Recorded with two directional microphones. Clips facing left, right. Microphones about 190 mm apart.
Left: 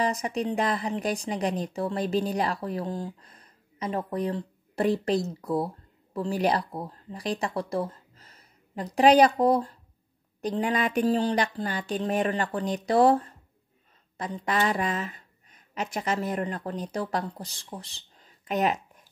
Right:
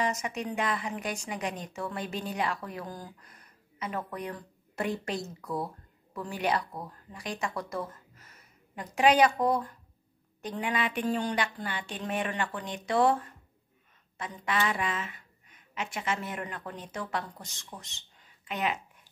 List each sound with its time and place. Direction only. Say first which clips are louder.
0.0 s a woman's voice: left 4 dB; 35° left (ahead or behind)